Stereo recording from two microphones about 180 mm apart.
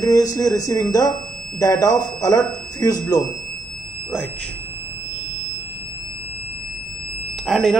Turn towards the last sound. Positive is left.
turn(degrees=0)  # may be behind; listen again after turning